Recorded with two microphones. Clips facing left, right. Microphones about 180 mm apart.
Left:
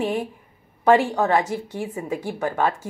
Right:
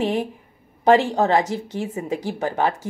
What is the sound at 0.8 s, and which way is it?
Speech, 20° right (ahead or behind).